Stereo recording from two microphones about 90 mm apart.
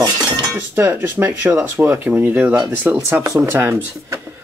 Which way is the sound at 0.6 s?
25° right (ahead or behind).